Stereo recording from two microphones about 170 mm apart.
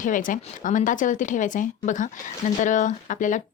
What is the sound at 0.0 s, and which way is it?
Speech, 50° left (ahead or behind).